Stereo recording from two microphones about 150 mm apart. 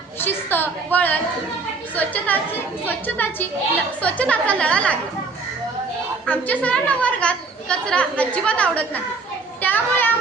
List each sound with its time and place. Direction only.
0.2 s a woman's voice: 15° left (ahead or behind)
6.2 s a woman's voice: 10° left (ahead or behind)
9.6 s children playing: 10° left (ahead or behind)